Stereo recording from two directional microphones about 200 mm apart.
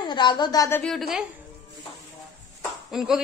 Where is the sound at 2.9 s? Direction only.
Centre (ahead or behind).